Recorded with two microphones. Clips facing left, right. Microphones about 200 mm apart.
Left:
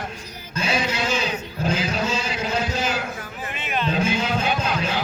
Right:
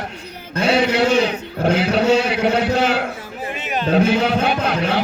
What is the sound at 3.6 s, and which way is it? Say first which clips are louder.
Music: right 3 dB; 40° right (ahead or behind).